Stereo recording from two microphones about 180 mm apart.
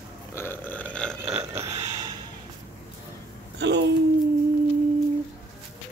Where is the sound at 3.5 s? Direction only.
75° right (ahead or behind).